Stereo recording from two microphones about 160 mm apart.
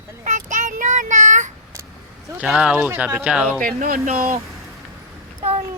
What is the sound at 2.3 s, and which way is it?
Speech, 5° right (ahead or behind).